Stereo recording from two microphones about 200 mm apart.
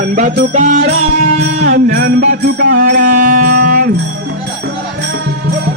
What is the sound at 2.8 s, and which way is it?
Music, 40° right (ahead or behind).